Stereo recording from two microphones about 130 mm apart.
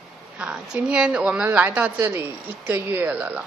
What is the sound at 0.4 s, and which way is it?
A woman's voice, 5° right (ahead or behind).